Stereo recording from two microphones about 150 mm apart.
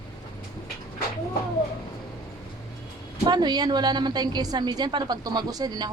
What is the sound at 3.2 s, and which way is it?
A woman's voice, 30° right (ahead or behind).